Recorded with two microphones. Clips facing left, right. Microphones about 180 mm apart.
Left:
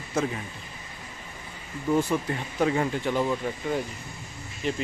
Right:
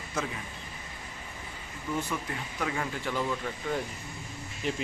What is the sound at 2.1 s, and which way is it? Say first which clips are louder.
Speech: left 7 dB; 30° left (ahead or behind).